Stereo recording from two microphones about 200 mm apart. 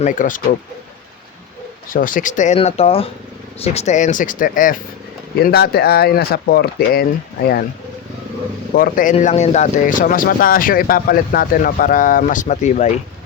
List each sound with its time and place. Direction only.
0.0 s speech: 40° left (ahead or behind)
1.9 s speech: 45° left (ahead or behind)
8.7 s speech: 45° left (ahead or behind)